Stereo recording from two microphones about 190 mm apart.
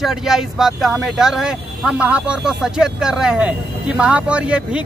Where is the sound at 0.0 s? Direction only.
Centre (ahead or behind).